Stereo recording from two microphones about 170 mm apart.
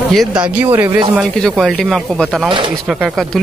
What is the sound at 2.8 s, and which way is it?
Speech, centre (ahead or behind).